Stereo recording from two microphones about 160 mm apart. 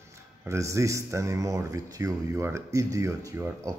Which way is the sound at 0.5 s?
20° right (ahead or behind).